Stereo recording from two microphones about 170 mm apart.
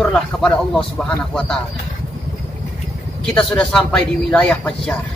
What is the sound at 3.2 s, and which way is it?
Speech, 5° left (ahead or behind).